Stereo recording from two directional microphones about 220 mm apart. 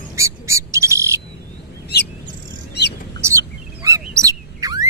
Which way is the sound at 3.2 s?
15° right (ahead or behind).